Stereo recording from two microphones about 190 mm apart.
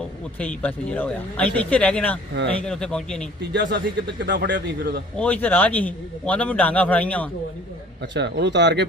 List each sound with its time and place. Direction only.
0.3 s a man's voice: 5° left (ahead or behind)
3.5 s a man's voice: 65° right (ahead or behind)
5.2 s a man's voice: 10° left (ahead or behind)
8.1 s a man's voice: 65° right (ahead or behind)